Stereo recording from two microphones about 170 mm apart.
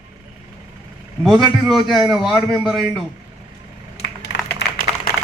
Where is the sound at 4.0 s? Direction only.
75° left (ahead or behind).